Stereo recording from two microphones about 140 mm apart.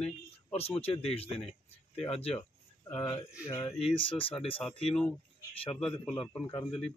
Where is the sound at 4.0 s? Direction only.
40° left (ahead or behind).